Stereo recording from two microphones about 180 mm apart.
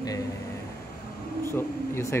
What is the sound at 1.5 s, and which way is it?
Speech, 15° left (ahead or behind).